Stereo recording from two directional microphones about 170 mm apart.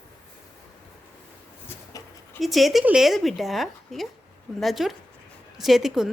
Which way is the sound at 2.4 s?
Centre (ahead or behind).